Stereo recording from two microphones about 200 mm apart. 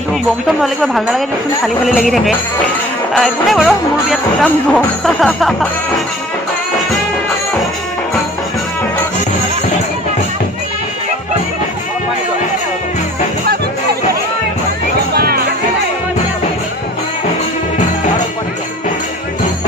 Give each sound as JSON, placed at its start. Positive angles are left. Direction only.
{"t": 0.5, "sound": "jingle bell", "side_deg": 0}
{"t": 15.1, "sound": "music", "side_deg": -50}